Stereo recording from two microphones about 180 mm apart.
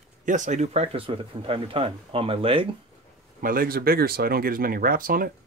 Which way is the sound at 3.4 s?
50° right (ahead or behind).